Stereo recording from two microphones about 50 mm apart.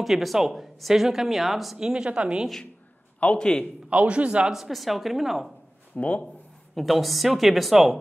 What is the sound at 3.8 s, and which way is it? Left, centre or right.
Speech, right.